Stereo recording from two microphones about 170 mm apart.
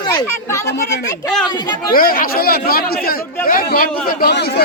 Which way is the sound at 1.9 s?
60° left (ahead or behind).